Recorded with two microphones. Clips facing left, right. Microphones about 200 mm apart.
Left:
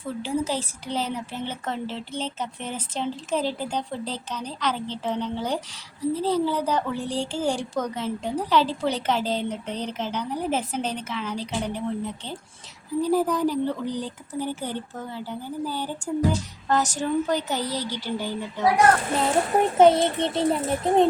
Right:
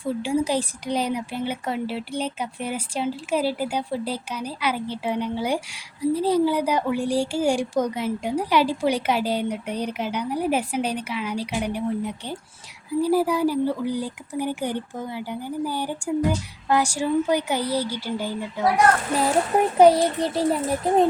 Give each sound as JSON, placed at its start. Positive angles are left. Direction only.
{"t": 0.0, "sound": "speech", "side_deg": -15}
{"t": 19.8, "sound": "a child's voice", "side_deg": 25}
{"t": 20.3, "sound": "a child's voice", "side_deg": -5}